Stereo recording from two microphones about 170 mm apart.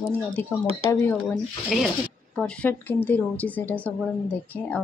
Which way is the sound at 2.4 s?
10° left (ahead or behind).